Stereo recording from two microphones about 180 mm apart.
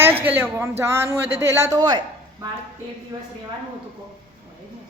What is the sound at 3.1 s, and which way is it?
Speech, 20° right (ahead or behind).